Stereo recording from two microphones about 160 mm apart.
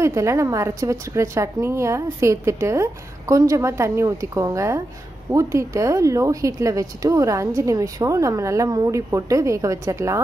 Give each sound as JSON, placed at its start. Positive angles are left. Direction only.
{"t": 0.0, "sound": "a woman's voice", "side_deg": -20}